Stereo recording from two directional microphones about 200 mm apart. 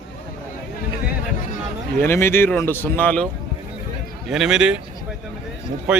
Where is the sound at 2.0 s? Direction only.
10° left (ahead or behind).